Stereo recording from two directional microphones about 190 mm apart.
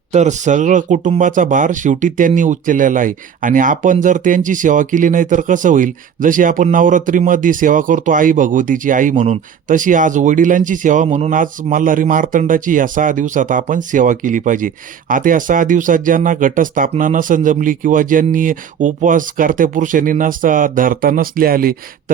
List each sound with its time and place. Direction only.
0.1 s speech: 40° right (ahead or behind)